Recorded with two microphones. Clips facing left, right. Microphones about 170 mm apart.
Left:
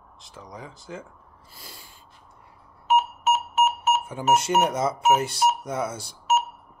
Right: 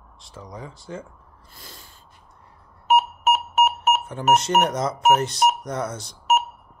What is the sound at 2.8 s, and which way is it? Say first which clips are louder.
Beep: right 2 dB; 60° right (ahead or behind).